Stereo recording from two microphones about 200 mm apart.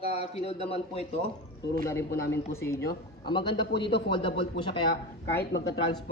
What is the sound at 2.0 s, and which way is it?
Speech, 55° left (ahead or behind).